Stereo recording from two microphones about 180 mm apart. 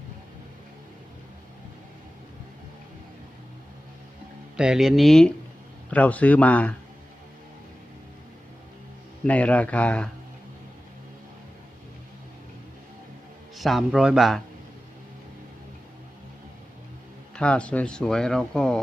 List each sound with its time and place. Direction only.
4.5 s speech: 5° right (ahead or behind)
9.2 s speech: 10° left (ahead or behind)
13.6 s speech: centre (ahead or behind)
17.3 s speech: 5° left (ahead or behind)